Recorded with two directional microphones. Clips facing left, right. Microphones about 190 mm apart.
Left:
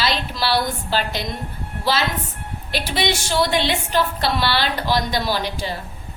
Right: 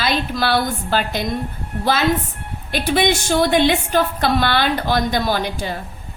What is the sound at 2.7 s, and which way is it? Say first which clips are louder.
A woman's voice: right 5 dB; 50° right (ahead or behind).